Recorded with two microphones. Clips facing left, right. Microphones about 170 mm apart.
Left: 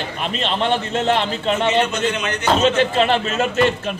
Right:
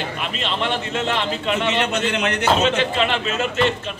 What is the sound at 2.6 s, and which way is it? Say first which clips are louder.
A man's voice: left 3 dB; 40° left (ahead or behind).